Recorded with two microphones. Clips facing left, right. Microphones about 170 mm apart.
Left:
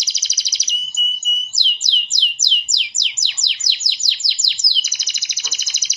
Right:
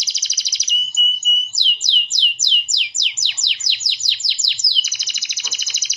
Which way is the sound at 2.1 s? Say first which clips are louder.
Right 1 dB; 35° left (ahead or behind).